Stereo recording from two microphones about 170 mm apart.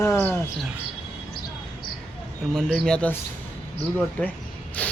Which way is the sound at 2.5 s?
5° left (ahead or behind).